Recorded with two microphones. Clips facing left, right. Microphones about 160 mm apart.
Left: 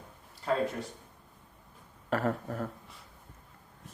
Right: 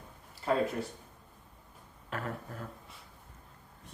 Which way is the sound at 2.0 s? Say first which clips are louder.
Left 8 dB; 45° left (ahead or behind).